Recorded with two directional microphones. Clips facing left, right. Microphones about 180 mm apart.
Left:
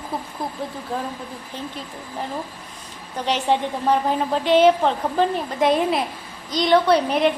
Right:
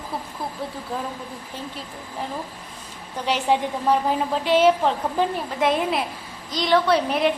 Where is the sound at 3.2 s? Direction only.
5° right (ahead or behind).